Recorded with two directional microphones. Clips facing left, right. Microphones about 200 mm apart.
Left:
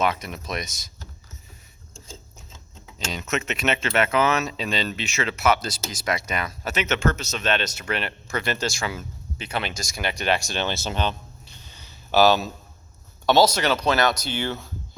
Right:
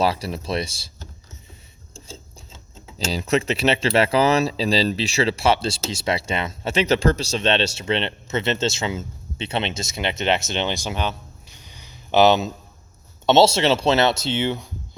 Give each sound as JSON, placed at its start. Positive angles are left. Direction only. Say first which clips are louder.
{"t": 0.0, "sound": "speech", "louder": "right 3 dB", "side_deg": -30}
{"t": 3.1, "sound": "speech", "louder": "right 7 dB", "side_deg": -30}